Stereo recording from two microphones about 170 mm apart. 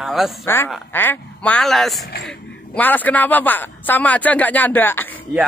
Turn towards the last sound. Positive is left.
turn(degrees=10)  # may be behind; listen again after turning